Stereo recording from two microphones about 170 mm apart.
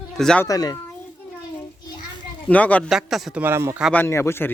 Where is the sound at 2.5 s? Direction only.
10° left (ahead or behind).